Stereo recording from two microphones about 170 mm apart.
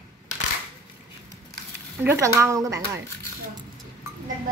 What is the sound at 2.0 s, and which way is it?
Speech, 15° right (ahead or behind).